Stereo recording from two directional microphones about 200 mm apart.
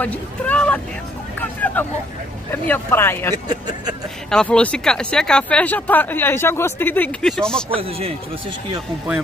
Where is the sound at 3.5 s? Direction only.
20° right (ahead or behind).